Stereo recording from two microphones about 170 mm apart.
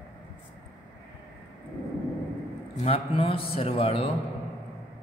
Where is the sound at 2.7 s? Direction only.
35° left (ahead or behind).